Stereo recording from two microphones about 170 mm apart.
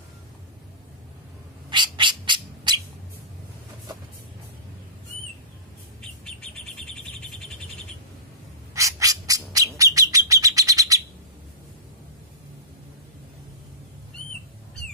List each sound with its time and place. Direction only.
1.7 s bird: 30° right (ahead or behind)
8.7 s bird: 20° right (ahead or behind)